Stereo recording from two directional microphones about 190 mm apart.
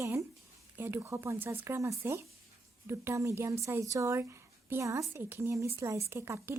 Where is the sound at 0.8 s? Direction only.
15° right (ahead or behind).